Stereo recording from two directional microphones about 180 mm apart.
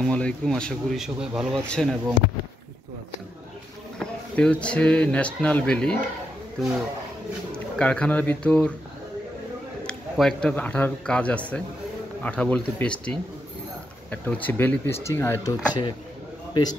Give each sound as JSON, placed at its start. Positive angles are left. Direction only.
{"t": 0.0, "sound": "speech", "side_deg": 5}
{"t": 4.0, "sound": "a man's voice", "side_deg": 5}
{"t": 7.5, "sound": "speech", "side_deg": 5}
{"t": 9.8, "sound": "a man's voice", "side_deg": 5}
{"t": 14.1, "sound": "a man's voice", "side_deg": 10}